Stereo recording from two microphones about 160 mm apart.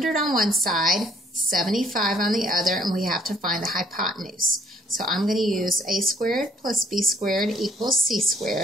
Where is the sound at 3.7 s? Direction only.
Centre (ahead or behind).